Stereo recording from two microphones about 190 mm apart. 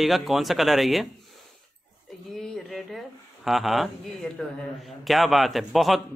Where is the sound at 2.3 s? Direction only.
Centre (ahead or behind).